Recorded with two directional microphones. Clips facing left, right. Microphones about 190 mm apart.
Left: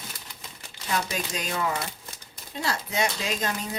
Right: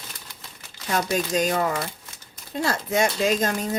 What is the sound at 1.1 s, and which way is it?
Speech, 45° right (ahead or behind).